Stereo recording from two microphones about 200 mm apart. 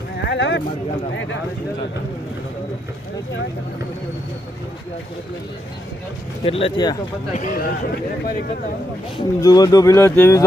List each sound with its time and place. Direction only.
0.2 s speech: 60° left (ahead or behind)
6.4 s speech: 30° left (ahead or behind)
7.3 s speech: 45° left (ahead or behind)
9.1 s speech: 20° left (ahead or behind)